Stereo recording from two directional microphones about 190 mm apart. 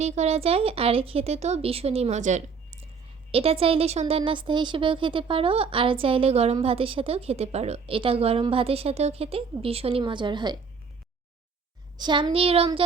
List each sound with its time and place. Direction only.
0.0 s a woman's voice: 35° right (ahead or behind)
11.9 s speech: 20° right (ahead or behind)